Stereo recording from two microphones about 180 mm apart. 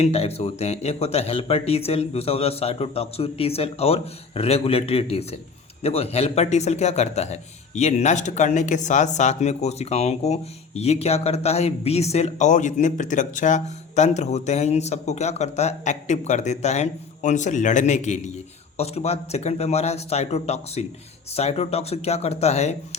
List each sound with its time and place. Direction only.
0.0 s speech: 35° left (ahead or behind)